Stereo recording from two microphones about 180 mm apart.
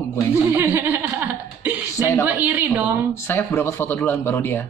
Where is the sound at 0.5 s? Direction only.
10° right (ahead or behind).